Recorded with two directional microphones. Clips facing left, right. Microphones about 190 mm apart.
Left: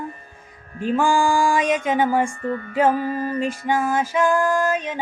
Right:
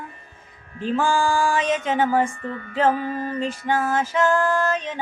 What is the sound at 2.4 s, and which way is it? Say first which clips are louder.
Music: left 5 dB; 40° left (ahead or behind).